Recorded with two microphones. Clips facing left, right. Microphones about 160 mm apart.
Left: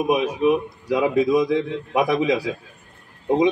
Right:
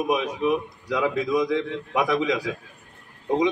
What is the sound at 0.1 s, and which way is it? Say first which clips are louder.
A man's voice: left 5 dB; 20° left (ahead or behind).